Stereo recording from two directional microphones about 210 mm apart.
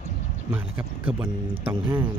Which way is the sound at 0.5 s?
10° right (ahead or behind).